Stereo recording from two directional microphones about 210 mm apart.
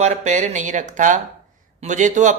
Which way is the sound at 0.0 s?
35° right (ahead or behind).